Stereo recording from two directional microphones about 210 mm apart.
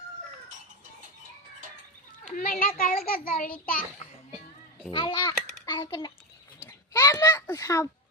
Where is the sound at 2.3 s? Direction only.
45° left (ahead or behind).